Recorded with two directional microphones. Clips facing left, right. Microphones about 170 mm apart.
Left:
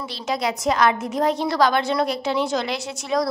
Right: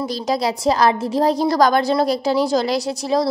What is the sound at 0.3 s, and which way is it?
A woman's voice, 35° right (ahead or behind).